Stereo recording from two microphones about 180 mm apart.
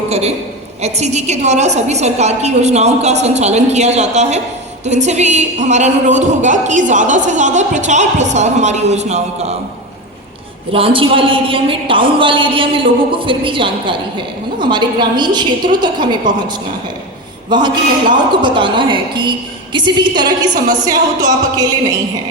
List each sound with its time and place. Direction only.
0.1 s a woman's voice: 35° right (ahead or behind)
10.7 s a woman's voice: 30° right (ahead or behind)
17.5 s a woman's voice: 25° right (ahead or behind)